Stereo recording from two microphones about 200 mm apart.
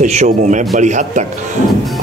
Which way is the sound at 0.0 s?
35° right (ahead or behind).